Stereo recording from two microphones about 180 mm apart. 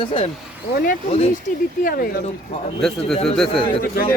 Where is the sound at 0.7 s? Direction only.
50° left (ahead or behind).